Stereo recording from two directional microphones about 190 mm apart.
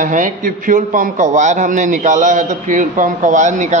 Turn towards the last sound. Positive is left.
turn(degrees=-40)  # may be behind; listen again after turning